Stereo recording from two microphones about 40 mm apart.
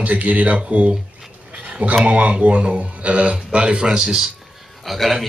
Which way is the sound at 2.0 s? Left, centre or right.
Right.